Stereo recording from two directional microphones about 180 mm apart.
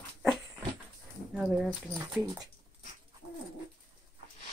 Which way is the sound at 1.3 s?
5° right (ahead or behind).